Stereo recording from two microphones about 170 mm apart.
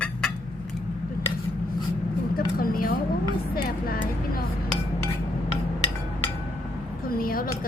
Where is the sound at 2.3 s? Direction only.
60° left (ahead or behind).